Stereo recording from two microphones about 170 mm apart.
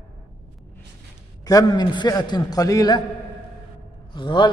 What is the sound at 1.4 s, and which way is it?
A man's voice, 25° left (ahead or behind).